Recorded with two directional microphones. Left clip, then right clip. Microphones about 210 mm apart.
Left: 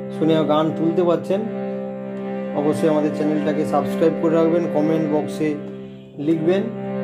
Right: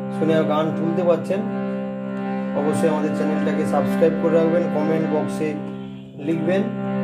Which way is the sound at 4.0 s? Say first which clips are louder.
Even; 50° left (ahead or behind).